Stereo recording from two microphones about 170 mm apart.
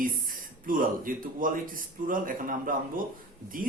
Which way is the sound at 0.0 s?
55° right (ahead or behind).